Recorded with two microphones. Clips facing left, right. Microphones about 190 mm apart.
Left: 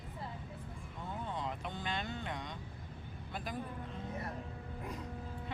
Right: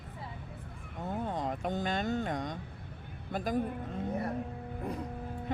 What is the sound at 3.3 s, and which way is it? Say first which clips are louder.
Speech: right 9 dB; 45° right (ahead or behind).